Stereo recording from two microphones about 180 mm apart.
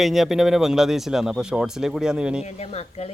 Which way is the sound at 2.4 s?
35° left (ahead or behind).